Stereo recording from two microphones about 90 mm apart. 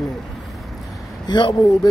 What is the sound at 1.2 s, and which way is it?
Speech, 55° left (ahead or behind).